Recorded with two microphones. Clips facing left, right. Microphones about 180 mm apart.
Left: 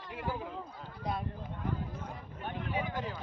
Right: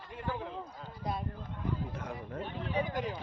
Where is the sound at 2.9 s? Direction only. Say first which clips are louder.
Right 2 dB; 15° right (ahead or behind).